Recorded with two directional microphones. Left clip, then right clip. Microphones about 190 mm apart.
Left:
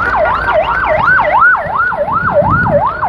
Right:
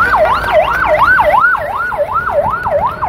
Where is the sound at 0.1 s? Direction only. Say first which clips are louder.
Right 1 dB; 40° right (ahead or behind).